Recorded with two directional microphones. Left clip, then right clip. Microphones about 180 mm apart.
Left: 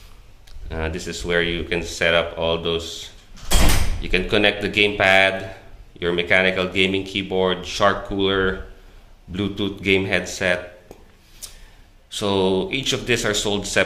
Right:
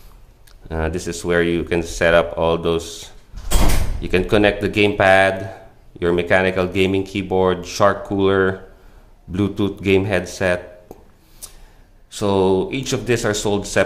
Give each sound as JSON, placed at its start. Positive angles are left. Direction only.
{"t": 0.7, "sound": "speech", "side_deg": -45}
{"t": 11.4, "sound": "a sound", "side_deg": -40}
{"t": 12.1, "sound": "speech", "side_deg": -40}